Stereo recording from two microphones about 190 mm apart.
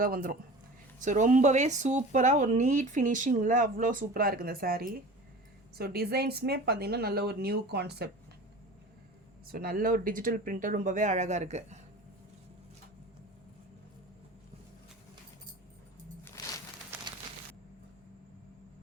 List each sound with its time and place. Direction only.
0.0 s speech: 50° right (ahead or behind)
9.5 s speech: 50° right (ahead or behind)